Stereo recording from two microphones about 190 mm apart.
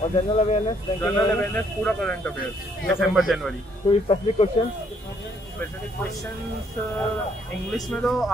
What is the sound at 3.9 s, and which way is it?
Speech, 30° left (ahead or behind).